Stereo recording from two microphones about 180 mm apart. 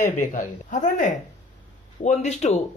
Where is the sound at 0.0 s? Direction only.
45° left (ahead or behind).